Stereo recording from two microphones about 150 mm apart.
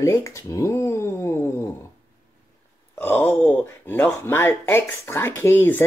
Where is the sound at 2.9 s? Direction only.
15° left (ahead or behind).